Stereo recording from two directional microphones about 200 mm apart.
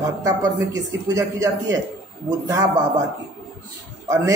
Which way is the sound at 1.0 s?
15° right (ahead or behind).